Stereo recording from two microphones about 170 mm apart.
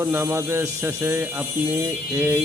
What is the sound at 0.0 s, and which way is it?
Speech, 15° right (ahead or behind).